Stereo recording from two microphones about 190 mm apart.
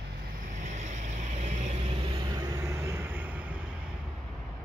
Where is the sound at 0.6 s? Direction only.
40° right (ahead or behind).